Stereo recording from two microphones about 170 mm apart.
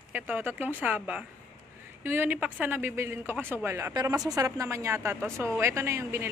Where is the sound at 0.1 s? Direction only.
10° right (ahead or behind).